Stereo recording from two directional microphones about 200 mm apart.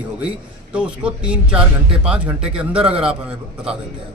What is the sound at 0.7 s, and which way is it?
A man's voice, 5° right (ahead or behind).